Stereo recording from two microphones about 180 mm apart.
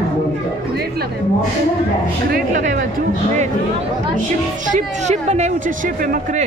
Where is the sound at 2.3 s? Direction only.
50° right (ahead or behind).